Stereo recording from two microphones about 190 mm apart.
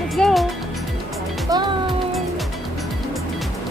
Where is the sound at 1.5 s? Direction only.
20° right (ahead or behind).